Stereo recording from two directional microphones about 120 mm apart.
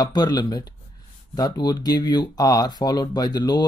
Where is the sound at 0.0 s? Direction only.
35° left (ahead or behind).